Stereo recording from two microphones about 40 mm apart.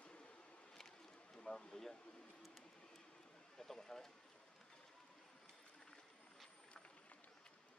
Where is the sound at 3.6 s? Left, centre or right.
Centre.